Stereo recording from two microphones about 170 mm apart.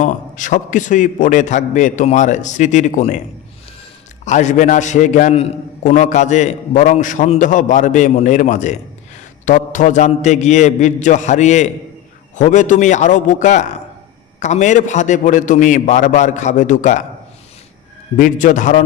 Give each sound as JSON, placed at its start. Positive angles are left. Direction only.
{"t": 0.0, "sound": "a man's voice", "side_deg": 45}
{"t": 4.3, "sound": "a man's voice", "side_deg": 45}
{"t": 18.2, "sound": "a man's voice", "side_deg": 50}